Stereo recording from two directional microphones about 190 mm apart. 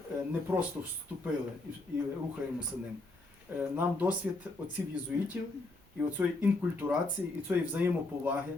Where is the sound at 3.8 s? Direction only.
10° right (ahead or behind).